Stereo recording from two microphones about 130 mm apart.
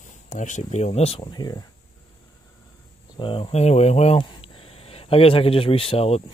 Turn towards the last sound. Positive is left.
turn(degrees=50)  # may be behind; listen again after turning